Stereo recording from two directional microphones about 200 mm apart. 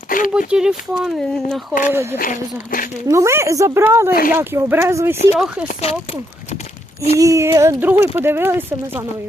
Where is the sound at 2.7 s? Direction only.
45° left (ahead or behind).